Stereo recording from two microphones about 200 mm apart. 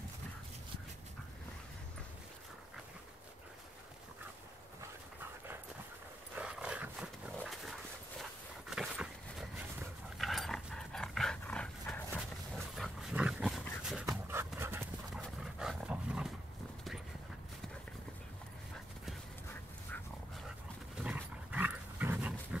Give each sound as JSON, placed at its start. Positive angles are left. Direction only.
{"t": 6.3, "sound": "dog", "side_deg": -5}
{"t": 8.2, "sound": "a sound", "side_deg": 0}
{"t": 10.0, "sound": "dog", "side_deg": 0}
{"t": 21.0, "sound": "dog", "side_deg": -5}